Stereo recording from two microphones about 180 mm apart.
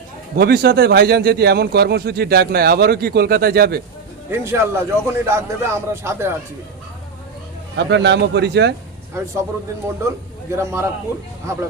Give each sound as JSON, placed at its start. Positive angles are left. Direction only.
{"t": 0.3, "sound": "speech", "side_deg": -60}
{"t": 4.3, "sound": "a man's voice", "side_deg": -15}
{"t": 7.8, "sound": "a man's voice", "side_deg": -75}
{"t": 10.5, "sound": "a man's voice", "side_deg": -15}